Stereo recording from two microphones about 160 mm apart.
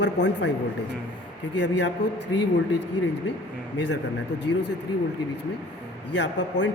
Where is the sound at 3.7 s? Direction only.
90° left.